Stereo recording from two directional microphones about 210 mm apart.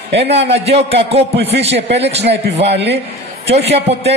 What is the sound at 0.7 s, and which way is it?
Speech, 30° right (ahead or behind).